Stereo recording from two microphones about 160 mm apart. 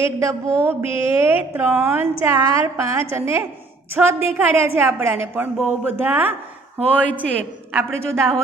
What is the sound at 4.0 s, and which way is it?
A woman's voice, 5° right (ahead or behind).